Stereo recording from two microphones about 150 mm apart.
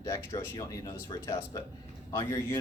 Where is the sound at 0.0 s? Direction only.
25° left (ahead or behind).